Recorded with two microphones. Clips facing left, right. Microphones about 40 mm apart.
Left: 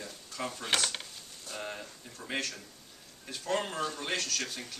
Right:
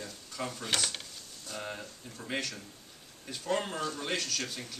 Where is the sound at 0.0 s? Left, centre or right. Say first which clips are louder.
Even; centre.